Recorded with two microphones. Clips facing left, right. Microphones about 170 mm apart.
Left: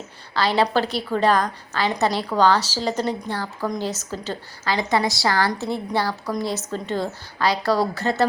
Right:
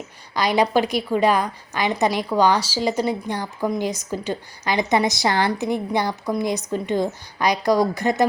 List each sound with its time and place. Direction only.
0.3 s a woman's voice: 15° right (ahead or behind)